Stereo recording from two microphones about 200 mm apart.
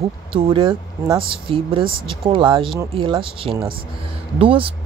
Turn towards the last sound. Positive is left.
turn(degrees=-25)  # may be behind; listen again after turning